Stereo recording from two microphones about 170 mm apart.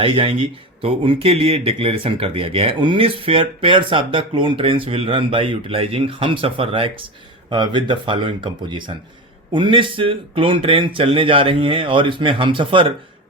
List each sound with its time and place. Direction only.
0.0 s speech: 30° right (ahead or behind)